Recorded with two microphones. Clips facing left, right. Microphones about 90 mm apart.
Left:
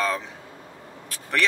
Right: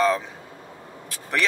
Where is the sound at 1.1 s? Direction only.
5° right (ahead or behind).